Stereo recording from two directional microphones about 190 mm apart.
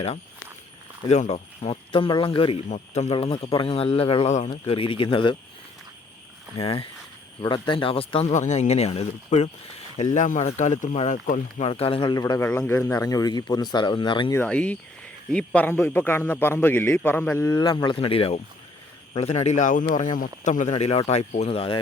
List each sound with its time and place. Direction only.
1.0 s speech: 35° left (ahead or behind)
6.6 s speech: 30° left (ahead or behind)
14.3 s a man's voice: 5° left (ahead or behind); by 21.8 s 30° left (ahead or behind)